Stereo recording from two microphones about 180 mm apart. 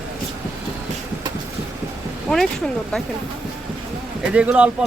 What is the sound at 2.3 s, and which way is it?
Speech, centre (ahead or behind).